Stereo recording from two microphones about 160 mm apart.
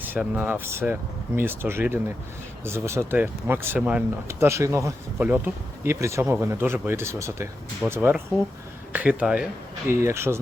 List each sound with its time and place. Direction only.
0.0 s speech: 10° right (ahead or behind)